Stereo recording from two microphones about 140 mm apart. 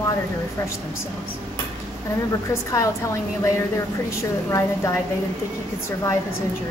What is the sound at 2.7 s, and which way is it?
A woman's voice, 20° left (ahead or behind).